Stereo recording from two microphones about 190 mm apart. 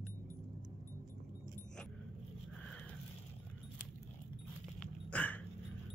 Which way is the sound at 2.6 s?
5° left (ahead or behind).